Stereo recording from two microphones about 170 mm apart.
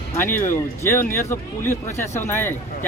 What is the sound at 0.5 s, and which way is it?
Speech, 15° left (ahead or behind).